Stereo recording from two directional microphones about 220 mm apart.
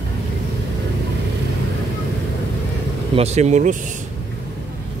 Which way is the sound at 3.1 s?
30° right (ahead or behind).